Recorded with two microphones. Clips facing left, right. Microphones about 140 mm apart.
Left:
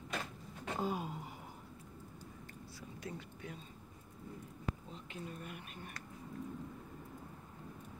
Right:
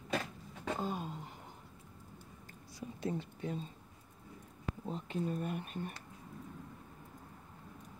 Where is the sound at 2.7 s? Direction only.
25° right (ahead or behind).